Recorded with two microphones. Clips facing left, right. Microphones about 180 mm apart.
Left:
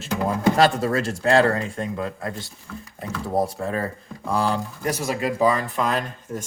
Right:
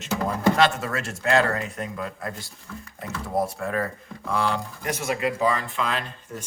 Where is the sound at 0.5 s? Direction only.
35° left (ahead or behind).